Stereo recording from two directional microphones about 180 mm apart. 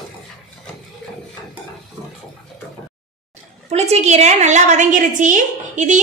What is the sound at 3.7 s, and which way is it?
A woman's voice, 40° right (ahead or behind).